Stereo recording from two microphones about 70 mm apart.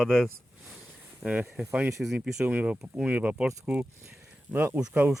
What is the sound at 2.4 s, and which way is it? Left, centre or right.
Speech, centre.